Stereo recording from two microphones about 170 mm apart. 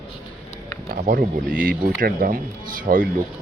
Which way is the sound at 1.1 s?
55° right (ahead or behind).